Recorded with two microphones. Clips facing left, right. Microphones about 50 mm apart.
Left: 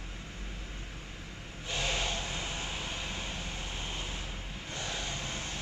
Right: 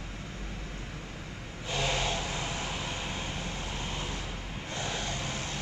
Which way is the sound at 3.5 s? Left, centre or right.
Right.